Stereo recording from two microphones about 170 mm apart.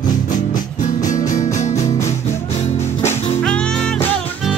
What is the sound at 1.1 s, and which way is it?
Music, 50° left (ahead or behind).